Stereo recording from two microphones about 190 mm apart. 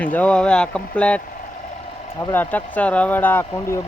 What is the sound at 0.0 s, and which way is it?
Speech, 10° left (ahead or behind).